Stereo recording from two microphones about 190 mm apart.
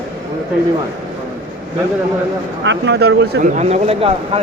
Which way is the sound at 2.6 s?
65° right (ahead or behind).